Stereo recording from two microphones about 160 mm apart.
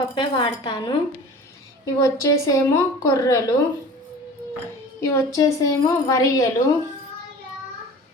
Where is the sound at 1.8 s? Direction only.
20° left (ahead or behind).